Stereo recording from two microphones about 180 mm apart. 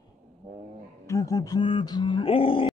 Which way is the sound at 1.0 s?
20° left (ahead or behind).